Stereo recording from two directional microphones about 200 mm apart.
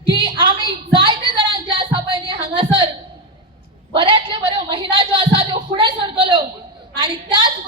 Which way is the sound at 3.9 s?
25° right (ahead or behind).